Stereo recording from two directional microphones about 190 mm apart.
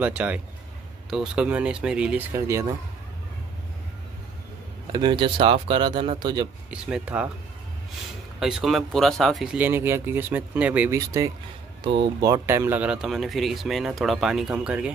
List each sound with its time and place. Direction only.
0.0 s speech: 5° right (ahead or behind)
4.9 s speech: 25° right (ahead or behind)
6.7 s speech: 5° right (ahead or behind)
8.4 s speech: centre (ahead or behind)